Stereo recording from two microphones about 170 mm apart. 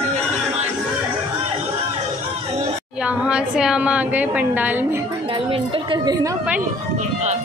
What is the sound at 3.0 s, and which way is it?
A woman's voice, 5° right (ahead or behind).